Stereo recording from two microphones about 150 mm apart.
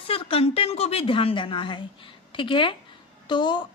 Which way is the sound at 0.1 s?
40° left (ahead or behind).